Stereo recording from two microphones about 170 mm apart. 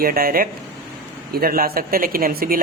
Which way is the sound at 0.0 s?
60° right (ahead or behind).